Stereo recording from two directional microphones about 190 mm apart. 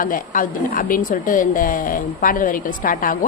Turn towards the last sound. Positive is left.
turn(degrees=45)  # may be behind; listen again after turning